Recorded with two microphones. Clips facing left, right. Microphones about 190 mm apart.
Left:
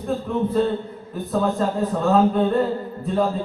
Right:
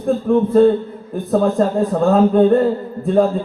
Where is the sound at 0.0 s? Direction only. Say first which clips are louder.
Right 8 dB; 50° right (ahead or behind).